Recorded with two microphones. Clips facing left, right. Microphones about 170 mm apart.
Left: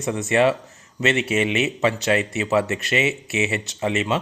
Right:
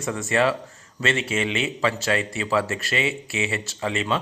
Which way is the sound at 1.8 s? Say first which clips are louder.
Left 2 dB; 20° left (ahead or behind).